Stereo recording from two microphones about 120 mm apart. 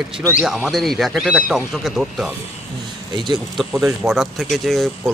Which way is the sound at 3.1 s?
40° right (ahead or behind).